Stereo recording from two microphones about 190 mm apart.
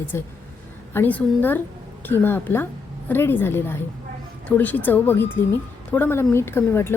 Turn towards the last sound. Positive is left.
turn(degrees=10)  # may be behind; listen again after turning